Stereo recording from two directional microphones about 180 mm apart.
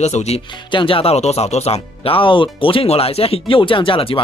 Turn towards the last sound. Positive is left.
turn(degrees=30)  # may be behind; listen again after turning